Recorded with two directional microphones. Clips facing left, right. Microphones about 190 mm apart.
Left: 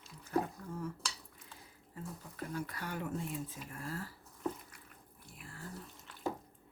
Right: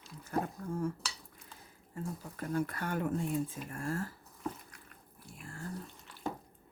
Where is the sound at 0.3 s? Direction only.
45° right (ahead or behind).